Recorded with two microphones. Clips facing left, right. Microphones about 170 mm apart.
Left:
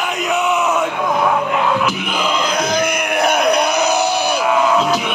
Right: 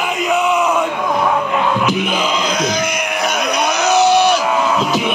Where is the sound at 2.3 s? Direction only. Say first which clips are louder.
Even; 55° left (ahead or behind).